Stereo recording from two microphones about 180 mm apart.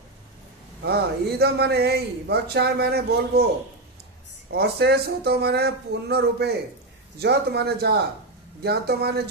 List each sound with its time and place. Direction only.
0.8 s a man's voice: 65° right (ahead or behind)
4.5 s a man's voice: 65° right (ahead or behind)